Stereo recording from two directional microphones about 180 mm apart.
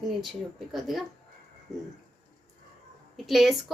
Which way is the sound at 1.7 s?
20° right (ahead or behind).